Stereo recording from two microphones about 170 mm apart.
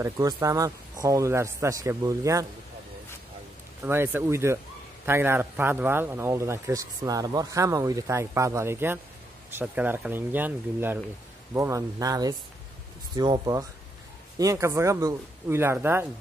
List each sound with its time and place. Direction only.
0.0 s speech: 20° right (ahead or behind)
3.8 s speech: 15° right (ahead or behind)